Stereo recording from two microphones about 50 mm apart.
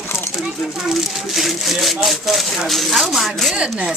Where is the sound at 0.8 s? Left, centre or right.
Centre.